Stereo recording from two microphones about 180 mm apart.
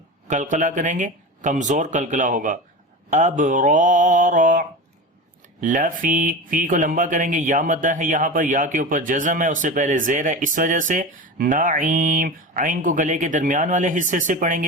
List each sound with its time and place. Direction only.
0.3 s speech: 45° right (ahead or behind)